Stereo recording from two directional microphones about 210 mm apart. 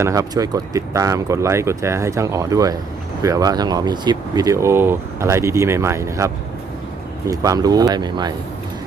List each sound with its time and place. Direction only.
0.0 s speech: 15° right (ahead or behind)